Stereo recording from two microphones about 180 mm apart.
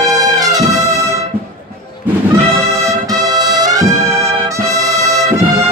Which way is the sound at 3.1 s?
20° right (ahead or behind).